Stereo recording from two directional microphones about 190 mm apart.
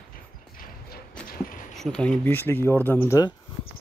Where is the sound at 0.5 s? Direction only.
45° left (ahead or behind).